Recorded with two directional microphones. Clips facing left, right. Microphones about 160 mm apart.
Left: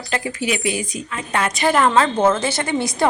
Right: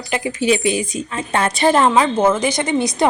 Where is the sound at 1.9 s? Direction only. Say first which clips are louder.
Right 1 dB; 10° right (ahead or behind).